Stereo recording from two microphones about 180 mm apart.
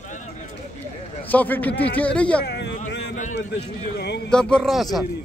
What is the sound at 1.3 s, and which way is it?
A man's voice, 10° left (ahead or behind).